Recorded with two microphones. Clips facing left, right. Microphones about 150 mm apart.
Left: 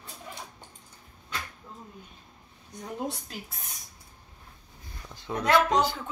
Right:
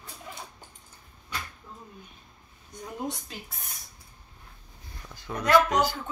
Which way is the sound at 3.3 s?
Centre (ahead or behind).